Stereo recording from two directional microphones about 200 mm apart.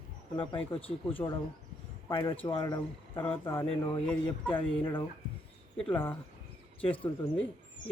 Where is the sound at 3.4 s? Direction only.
10° left (ahead or behind).